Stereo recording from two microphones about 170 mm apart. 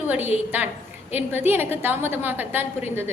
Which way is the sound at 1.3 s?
10° right (ahead or behind).